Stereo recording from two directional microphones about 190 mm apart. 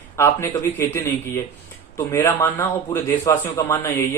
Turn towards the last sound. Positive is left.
turn(degrees=15)  # may be behind; listen again after turning